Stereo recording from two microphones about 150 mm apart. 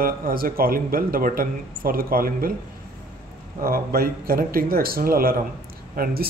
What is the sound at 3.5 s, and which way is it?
Speech, 80° right.